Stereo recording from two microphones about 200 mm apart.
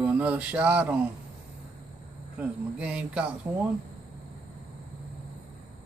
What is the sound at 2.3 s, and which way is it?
Speech, 5° right (ahead or behind).